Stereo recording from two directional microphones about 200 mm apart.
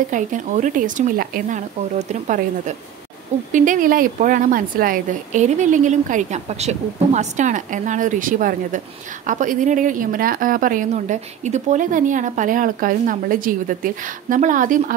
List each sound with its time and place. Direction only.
0.1 s a woman's voice: 40° right (ahead or behind)